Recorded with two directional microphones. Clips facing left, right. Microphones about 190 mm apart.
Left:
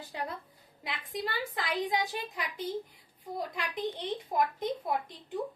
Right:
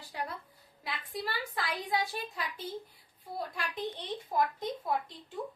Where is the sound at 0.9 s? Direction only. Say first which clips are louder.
Left 1 dB; 20° left (ahead or behind).